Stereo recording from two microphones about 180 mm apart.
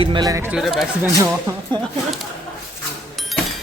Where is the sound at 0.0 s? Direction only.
25° right (ahead or behind).